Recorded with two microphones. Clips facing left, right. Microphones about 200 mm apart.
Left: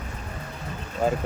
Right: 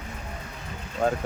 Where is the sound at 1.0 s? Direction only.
5° left (ahead or behind).